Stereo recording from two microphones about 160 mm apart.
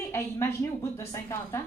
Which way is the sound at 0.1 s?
15° left (ahead or behind).